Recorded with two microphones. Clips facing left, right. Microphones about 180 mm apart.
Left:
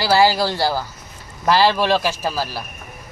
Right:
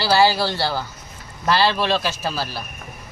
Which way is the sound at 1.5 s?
10° left (ahead or behind).